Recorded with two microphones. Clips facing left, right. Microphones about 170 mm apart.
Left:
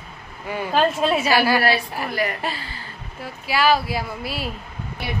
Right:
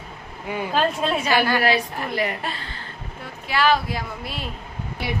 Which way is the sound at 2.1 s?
25° right (ahead or behind).